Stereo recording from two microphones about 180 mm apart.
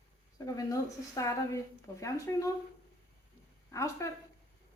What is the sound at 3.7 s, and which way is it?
Speech, 15° left (ahead or behind).